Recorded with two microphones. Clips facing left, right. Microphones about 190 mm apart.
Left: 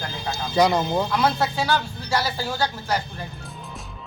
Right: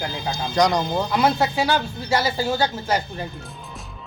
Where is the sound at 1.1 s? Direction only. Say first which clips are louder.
Right 2 dB; 15° right (ahead or behind).